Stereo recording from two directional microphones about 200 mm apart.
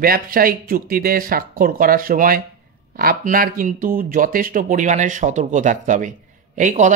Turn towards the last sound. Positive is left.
turn(degrees=-40)  # may be behind; listen again after turning